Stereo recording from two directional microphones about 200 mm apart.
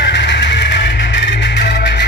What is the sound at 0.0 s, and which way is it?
Music, 60° left (ahead or behind).